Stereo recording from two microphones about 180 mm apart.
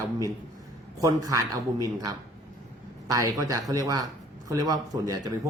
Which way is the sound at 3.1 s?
20° right (ahead or behind).